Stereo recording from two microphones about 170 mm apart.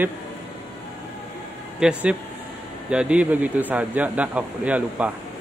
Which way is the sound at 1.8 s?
5° right (ahead or behind).